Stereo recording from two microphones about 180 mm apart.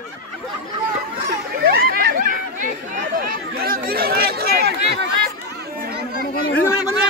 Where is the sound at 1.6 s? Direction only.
60° right (ahead or behind).